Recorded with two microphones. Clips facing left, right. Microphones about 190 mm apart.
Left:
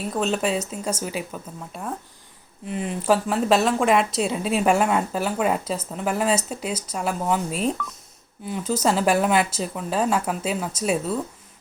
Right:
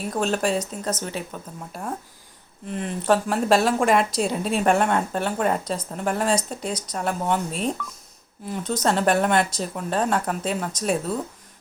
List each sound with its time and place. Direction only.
0.1 s speech: centre (ahead or behind)